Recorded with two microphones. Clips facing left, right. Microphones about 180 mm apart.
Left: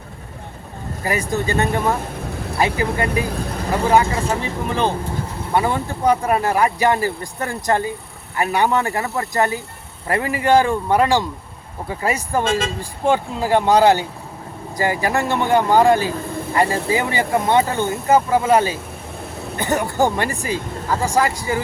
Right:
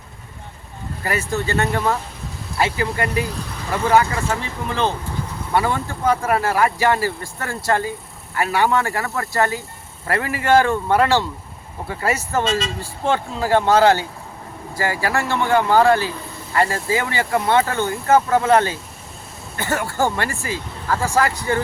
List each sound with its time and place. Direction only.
1.0 s speech: 15° left (ahead or behind)
12.5 s speech: 50° left (ahead or behind)
12.8 s speech: 15° left (ahead or behind)